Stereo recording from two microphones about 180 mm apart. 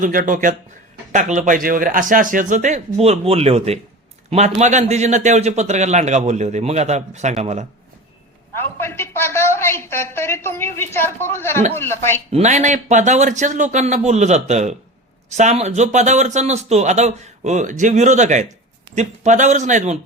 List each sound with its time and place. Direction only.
0.0 s speech: 50° right (ahead or behind)
8.5 s a woman's voice: 15° left (ahead or behind)
12.3 s speech: 40° right (ahead or behind)